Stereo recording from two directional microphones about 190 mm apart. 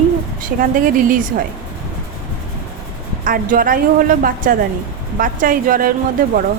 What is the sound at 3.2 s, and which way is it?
A woman's voice, 45° right (ahead or behind).